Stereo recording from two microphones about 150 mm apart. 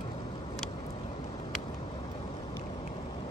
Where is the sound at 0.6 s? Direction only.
40° left (ahead or behind).